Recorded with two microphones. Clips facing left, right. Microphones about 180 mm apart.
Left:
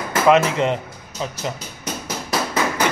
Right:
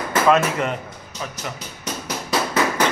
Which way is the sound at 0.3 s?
20° left (ahead or behind).